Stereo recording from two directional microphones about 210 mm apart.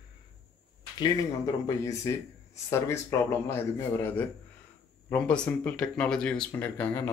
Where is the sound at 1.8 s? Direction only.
15° left (ahead or behind).